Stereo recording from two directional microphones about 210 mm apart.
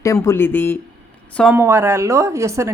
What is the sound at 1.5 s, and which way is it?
Speech, 10° right (ahead or behind).